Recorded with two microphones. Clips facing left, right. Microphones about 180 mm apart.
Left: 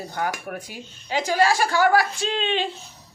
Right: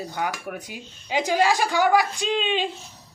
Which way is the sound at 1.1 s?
15° right (ahead or behind).